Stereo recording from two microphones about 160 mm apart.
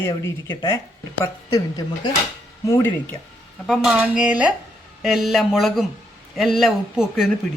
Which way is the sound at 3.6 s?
5° right (ahead or behind).